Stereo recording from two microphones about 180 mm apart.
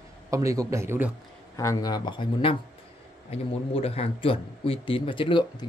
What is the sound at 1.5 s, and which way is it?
A man's voice, 20° left (ahead or behind).